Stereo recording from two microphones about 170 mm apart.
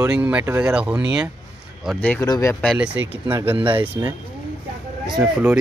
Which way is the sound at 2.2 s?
20° left (ahead or behind).